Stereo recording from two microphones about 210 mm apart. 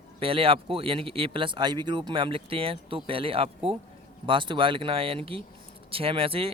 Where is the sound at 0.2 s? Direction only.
25° right (ahead or behind).